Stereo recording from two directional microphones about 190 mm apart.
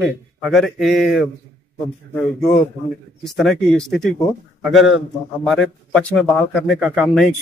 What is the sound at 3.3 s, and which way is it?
A man's voice, centre (ahead or behind).